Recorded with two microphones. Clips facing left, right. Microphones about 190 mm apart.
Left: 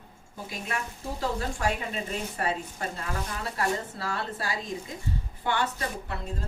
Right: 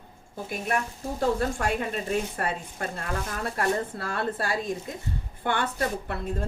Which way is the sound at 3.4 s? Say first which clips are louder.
Right 3 dB; 55° right (ahead or behind).